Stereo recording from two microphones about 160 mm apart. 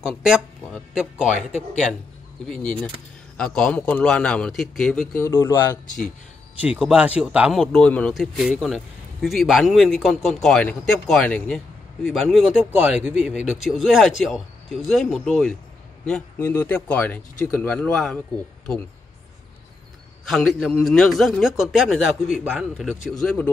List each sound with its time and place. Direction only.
0.0 s speech: 5° right (ahead or behind)
2.5 s speech: 10° left (ahead or behind)
5.2 s speech: 15° left (ahead or behind)
6.8 s speech: 5° right (ahead or behind)
7.6 s speech: 5° left (ahead or behind)
16.3 s speech: 15° left (ahead or behind)
20.2 s speech: centre (ahead or behind)